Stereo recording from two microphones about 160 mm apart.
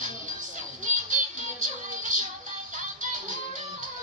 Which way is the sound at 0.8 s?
55° right (ahead or behind).